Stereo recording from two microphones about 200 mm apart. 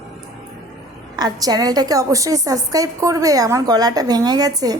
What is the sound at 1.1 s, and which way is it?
A woman's voice, 20° right (ahead or behind).